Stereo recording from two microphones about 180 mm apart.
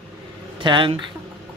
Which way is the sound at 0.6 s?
25° right (ahead or behind).